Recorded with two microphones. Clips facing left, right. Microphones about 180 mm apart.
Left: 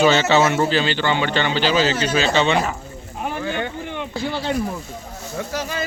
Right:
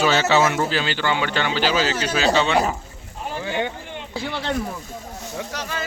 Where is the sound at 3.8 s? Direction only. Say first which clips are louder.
Left 6 dB; 60° left (ahead or behind).